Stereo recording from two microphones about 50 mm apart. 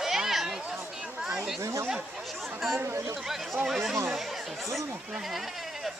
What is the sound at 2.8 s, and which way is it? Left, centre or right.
Speech, right.